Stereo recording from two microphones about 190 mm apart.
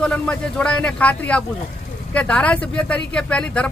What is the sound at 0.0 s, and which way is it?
A woman's voice, 5° left (ahead or behind).